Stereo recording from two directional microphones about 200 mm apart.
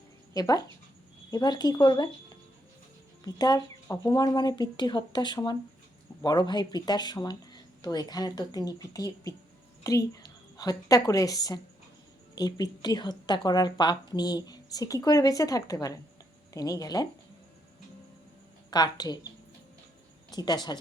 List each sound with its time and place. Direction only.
0.3 s a woman's voice: 20° left (ahead or behind)
3.2 s a woman's voice: 20° left (ahead or behind)
18.7 s a woman's voice: 20° left (ahead or behind)
20.3 s a woman's voice: 20° left (ahead or behind)